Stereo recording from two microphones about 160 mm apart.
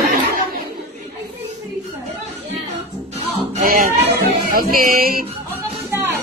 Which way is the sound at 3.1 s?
45° right (ahead or behind).